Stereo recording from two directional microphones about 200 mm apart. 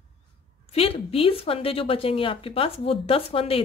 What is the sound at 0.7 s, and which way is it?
Speech, 30° left (ahead or behind).